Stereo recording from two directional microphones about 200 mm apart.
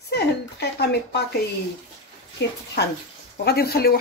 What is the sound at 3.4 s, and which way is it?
Speech, 50° left (ahead or behind).